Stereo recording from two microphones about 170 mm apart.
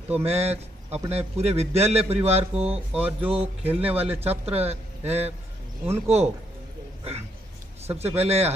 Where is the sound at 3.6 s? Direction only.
10° right (ahead or behind).